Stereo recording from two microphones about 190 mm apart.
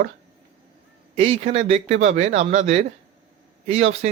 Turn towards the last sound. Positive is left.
turn(degrees=-35)  # may be behind; listen again after turning